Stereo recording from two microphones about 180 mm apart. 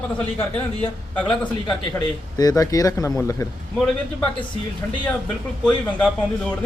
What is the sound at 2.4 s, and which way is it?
Speech, 20° left (ahead or behind).